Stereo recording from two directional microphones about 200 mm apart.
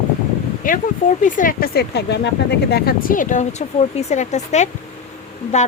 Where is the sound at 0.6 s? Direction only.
45° left (ahead or behind).